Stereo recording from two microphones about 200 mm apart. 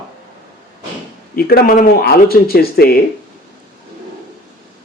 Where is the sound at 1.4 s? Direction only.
50° left (ahead or behind).